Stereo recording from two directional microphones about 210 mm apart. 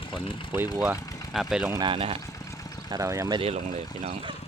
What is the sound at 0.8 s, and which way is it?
Speech, 5° right (ahead or behind).